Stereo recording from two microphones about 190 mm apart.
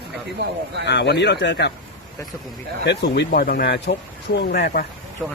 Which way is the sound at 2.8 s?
65° left (ahead or behind).